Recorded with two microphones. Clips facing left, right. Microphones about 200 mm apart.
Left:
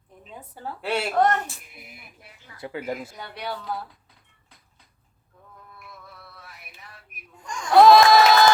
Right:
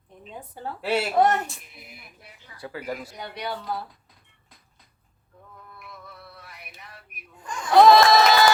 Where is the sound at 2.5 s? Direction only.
20° left (ahead or behind).